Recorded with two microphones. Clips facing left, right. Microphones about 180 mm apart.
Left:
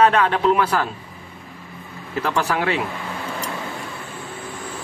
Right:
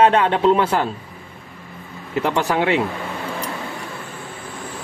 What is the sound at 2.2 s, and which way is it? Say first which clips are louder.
Speech: right 3 dB; 20° right (ahead or behind).